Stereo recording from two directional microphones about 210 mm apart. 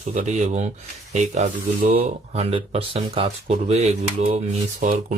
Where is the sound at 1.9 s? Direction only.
30° right (ahead or behind).